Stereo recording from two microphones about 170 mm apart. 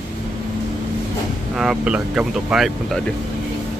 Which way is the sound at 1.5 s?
5° right (ahead or behind).